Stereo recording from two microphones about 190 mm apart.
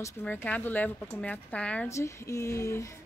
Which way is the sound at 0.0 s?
10° left (ahead or behind).